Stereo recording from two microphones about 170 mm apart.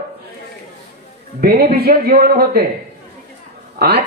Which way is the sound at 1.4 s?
65° right (ahead or behind).